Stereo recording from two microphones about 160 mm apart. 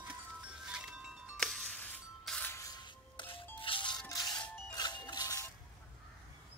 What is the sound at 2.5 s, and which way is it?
Music, 20° left (ahead or behind).